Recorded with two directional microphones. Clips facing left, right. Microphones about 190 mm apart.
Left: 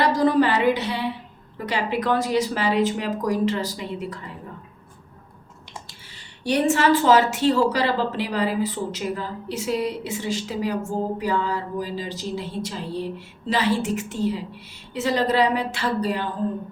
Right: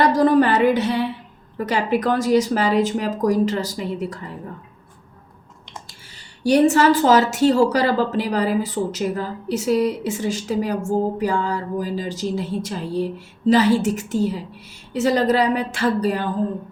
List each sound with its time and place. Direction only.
0.0 s a sound: 50° right (ahead or behind)
1.5 s a woman's voice: 45° right (ahead or behind)
6.4 s a woman's voice: 40° right (ahead or behind)